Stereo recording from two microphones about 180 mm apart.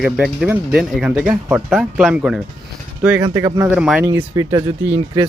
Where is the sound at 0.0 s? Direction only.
5° right (ahead or behind).